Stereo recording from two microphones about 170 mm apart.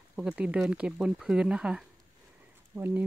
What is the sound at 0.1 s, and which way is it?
Speech, 5° right (ahead or behind).